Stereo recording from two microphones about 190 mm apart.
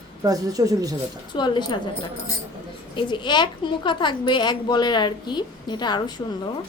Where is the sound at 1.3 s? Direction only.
25° left (ahead or behind).